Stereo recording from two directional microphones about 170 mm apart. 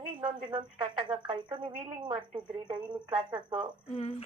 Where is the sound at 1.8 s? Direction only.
25° right (ahead or behind).